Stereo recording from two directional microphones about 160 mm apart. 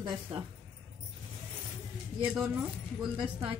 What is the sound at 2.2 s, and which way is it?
Speech, 10° right (ahead or behind).